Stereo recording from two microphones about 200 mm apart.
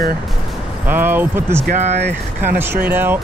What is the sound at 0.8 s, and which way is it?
Speech, 10° right (ahead or behind).